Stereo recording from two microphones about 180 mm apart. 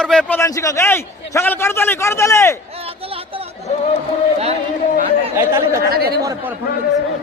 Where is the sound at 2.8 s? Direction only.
30° right (ahead or behind).